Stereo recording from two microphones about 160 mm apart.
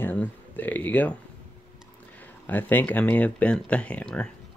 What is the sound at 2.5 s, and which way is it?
Speech, 10° left (ahead or behind).